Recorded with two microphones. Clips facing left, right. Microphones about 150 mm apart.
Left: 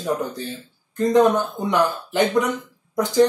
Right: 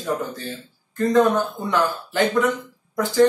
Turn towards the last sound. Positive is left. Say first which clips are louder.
# left 1 dB
turn(degrees=20)  # may be behind; listen again after turning